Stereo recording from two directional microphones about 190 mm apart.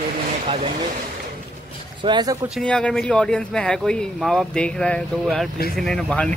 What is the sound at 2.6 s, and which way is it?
Speech, 5° left (ahead or behind).